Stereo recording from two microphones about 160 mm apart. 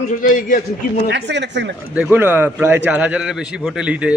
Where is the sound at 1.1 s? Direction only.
90° right.